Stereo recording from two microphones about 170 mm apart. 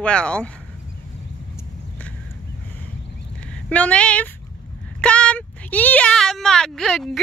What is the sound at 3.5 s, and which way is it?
Speech, 5° left (ahead or behind).